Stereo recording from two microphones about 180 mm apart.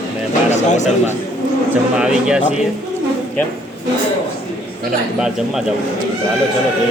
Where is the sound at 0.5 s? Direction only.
40° left (ahead or behind).